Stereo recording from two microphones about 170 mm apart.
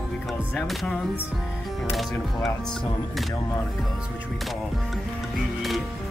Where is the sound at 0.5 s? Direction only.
Centre (ahead or behind).